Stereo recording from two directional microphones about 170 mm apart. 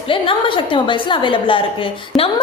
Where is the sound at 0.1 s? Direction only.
30° left (ahead or behind).